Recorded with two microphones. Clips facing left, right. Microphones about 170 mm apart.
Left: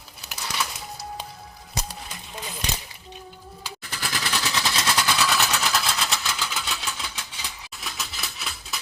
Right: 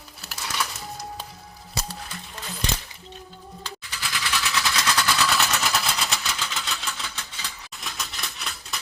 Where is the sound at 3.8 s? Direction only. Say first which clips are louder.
Left 3 dB; 50° left (ahead or behind); by 5.0 s 30° left (ahead or behind).